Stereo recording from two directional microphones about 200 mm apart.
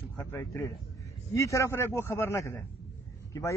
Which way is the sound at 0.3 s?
10° left (ahead or behind).